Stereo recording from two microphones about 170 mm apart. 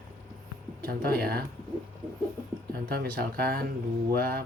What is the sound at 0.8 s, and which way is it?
Speech, 65° right (ahead or behind).